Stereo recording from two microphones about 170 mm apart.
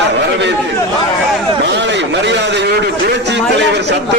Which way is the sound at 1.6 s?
90° right.